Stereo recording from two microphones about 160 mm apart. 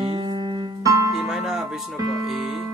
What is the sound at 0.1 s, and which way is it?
Music, 30° right (ahead or behind).